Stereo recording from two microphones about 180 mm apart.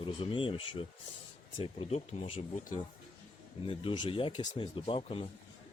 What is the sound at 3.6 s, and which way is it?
Speech, 30° left (ahead or behind).